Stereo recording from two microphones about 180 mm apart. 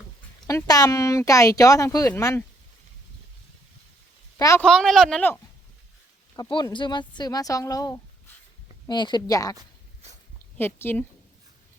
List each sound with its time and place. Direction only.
0.4 s speech: 20° left (ahead or behind)
4.4 s speech: 20° left (ahead or behind)
4.6 s speech: 5° left (ahead or behind)
6.3 s speech: 25° left (ahead or behind)
10.6 s a woman's voice: 10° left (ahead or behind)